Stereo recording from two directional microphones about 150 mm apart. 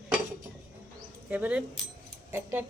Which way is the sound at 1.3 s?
10° right (ahead or behind).